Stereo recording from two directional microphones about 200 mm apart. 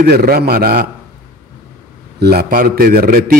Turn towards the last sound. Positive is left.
turn(degrees=-45)  # may be behind; listen again after turning